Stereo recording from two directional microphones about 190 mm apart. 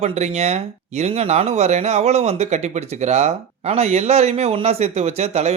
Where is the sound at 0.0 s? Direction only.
35° right (ahead or behind).